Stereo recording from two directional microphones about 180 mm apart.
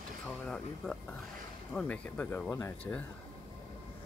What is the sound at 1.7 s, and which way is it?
Speech, 5° left (ahead or behind).